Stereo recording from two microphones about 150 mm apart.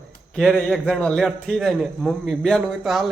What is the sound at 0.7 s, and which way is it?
Speech, 5° left (ahead or behind).